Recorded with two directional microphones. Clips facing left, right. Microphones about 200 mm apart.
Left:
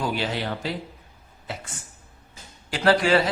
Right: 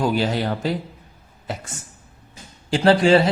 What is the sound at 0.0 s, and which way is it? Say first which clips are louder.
Speech: right 6 dB; 45° right (ahead or behind).